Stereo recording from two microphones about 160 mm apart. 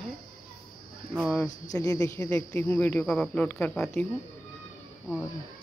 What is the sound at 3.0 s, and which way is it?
Speech, 5° left (ahead or behind).